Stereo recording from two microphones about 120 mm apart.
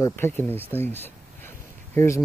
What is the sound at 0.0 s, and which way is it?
Speech, 20° left (ahead or behind).